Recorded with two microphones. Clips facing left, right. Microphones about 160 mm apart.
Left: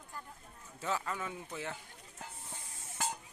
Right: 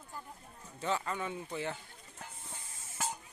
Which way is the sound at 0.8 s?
Centre (ahead or behind).